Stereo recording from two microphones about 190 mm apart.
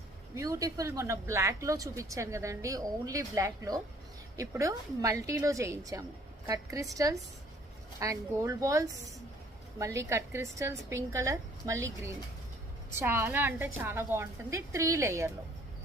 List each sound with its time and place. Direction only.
0.3 s a woman's voice: 15° right (ahead or behind)